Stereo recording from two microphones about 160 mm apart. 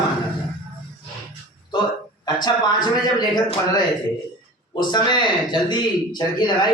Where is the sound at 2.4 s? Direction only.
25° left (ahead or behind).